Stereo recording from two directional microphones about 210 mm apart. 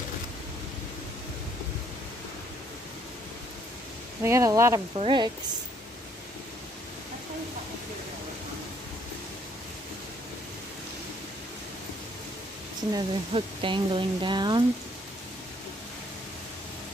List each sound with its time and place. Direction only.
4.2 s speech: 15° right (ahead or behind)
12.9 s speech: 25° right (ahead or behind)